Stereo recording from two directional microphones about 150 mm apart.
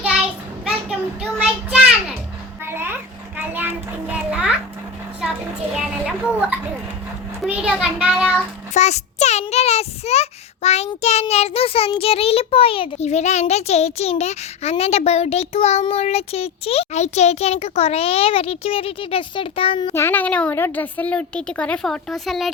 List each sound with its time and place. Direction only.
0.0 s child singing: 5° right (ahead or behind)
2.6 s a sound: 15° right (ahead or behind)
5.2 s children playing: 5° right (ahead or behind)
7.4 s a child's voice: 10° right (ahead or behind)
8.7 s a child's voice: 50° left (ahead or behind)
19.9 s a woman's voice: 15° left (ahead or behind)